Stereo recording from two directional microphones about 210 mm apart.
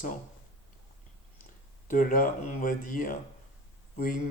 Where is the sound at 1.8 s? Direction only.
40° left (ahead or behind).